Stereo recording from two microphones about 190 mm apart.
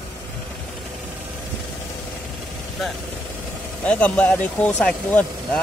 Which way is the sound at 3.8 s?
5° left (ahead or behind).